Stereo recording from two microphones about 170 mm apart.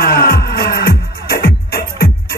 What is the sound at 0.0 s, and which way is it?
Music, 60° left (ahead or behind).